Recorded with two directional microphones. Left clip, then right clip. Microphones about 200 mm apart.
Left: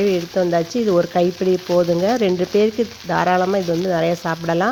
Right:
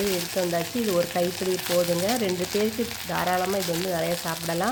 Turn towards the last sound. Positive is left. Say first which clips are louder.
# left 8 dB
turn(degrees=40)  # may be behind; listen again after turning